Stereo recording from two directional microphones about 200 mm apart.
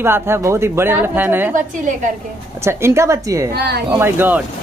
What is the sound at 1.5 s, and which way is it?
Speech, 40° right (ahead or behind).